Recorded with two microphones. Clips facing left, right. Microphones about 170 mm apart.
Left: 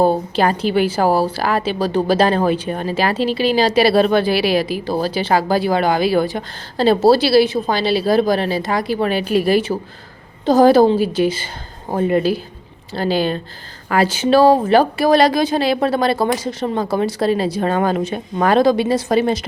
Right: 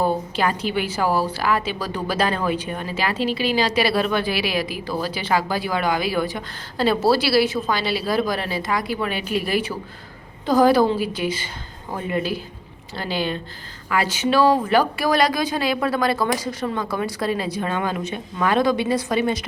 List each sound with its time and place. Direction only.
0.0 s a woman's voice: 30° left (ahead or behind)